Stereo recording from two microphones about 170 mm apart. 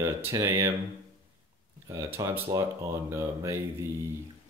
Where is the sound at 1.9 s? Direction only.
15° right (ahead or behind).